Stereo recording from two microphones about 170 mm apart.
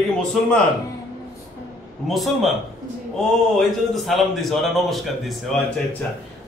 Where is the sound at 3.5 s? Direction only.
Centre (ahead or behind).